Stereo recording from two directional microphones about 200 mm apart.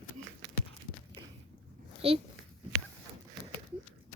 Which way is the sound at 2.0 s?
30° right (ahead or behind).